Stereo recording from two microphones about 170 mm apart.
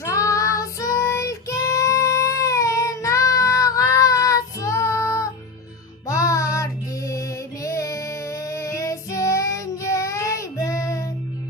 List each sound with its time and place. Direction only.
0.0 s child singing: 20° left (ahead or behind)
6.1 s female singing: 20° left (ahead or behind)